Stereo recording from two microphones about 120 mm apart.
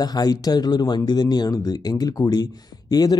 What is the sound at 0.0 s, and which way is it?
Speech, 35° left (ahead or behind).